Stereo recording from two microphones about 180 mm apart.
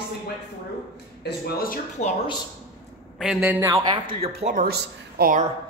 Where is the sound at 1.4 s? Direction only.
55° left (ahead or behind).